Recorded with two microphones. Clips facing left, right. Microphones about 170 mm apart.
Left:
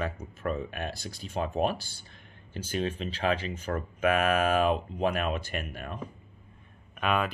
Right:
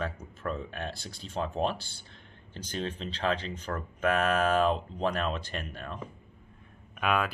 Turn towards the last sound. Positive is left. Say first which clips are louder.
# left 1 dB
turn(degrees=0)  # may be behind; listen again after turning